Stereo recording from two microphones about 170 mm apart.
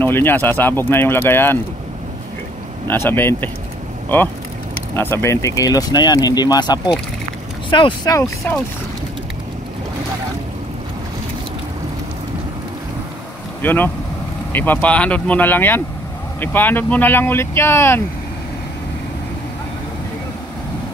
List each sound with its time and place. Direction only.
0.0 s speech: 10° left (ahead or behind)
2.9 s speech: 10° left (ahead or behind)
4.9 s speech: 15° left (ahead or behind)
13.6 s speech: 10° left (ahead or behind)